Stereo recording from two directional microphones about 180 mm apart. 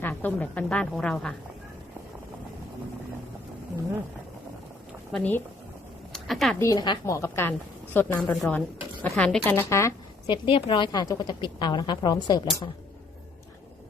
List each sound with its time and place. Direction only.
0.0 s a woman's voice: 10° left (ahead or behind)
5.1 s a woman's voice: 5° left (ahead or behind)
6.6 s a woman's voice: 20° left (ahead or behind)